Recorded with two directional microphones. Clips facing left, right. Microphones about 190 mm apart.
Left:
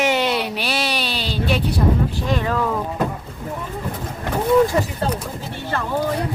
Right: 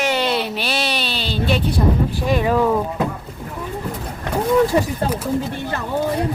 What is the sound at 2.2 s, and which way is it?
Speech, 10° right (ahead or behind).